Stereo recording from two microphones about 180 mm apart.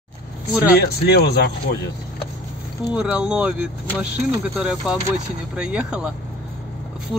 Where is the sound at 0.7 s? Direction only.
65° left (ahead or behind).